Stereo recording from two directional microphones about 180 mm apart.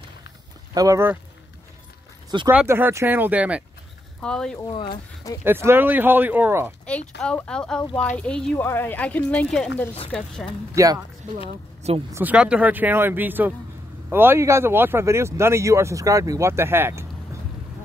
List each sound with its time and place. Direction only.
0.7 s speech: 15° right (ahead or behind)
2.5 s speech: 10° right (ahead or behind)
4.2 s speech: 5° left (ahead or behind)
4.6 s speech: 25° left (ahead or behind)
5.4 s speech: 10° right (ahead or behind)
7.2 s speech: 5° left (ahead or behind)
10.7 s speech: 15° right (ahead or behind)
12.1 s speech: 10° right (ahead or behind)